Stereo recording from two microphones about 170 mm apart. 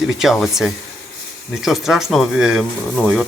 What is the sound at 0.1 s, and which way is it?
Speech, centre (ahead or behind).